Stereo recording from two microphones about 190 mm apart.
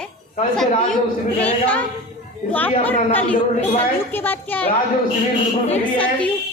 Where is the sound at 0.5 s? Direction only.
Centre (ahead or behind).